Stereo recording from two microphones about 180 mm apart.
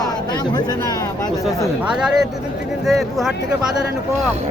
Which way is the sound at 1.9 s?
5° right (ahead or behind).